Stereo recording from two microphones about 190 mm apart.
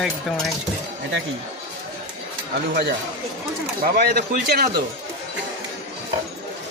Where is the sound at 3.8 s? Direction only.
55° right (ahead or behind).